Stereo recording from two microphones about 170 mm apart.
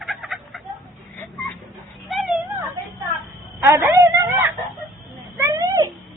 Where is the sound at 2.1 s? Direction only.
Centre (ahead or behind).